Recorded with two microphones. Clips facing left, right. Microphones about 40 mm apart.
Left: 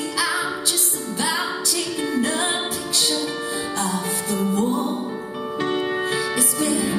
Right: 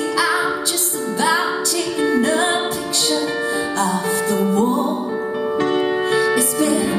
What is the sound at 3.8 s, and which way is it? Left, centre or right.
Music, centre.